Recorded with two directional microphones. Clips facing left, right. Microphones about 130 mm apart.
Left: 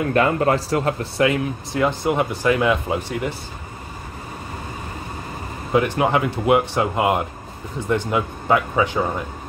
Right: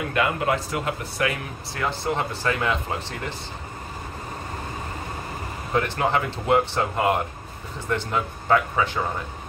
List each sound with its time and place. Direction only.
0.1 s speech: 40° left (ahead or behind)
1.2 s speech: 20° left (ahead or behind)
5.7 s speech: 15° left (ahead or behind)